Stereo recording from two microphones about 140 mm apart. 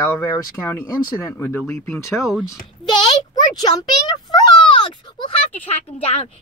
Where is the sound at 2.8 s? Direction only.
30° left (ahead or behind).